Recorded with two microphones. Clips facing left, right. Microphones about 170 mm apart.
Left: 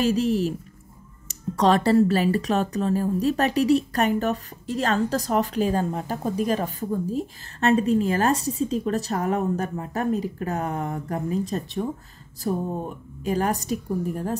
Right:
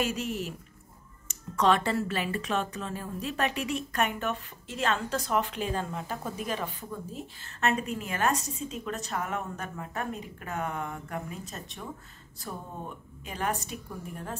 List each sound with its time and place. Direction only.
0.0 s speech: 35° left (ahead or behind)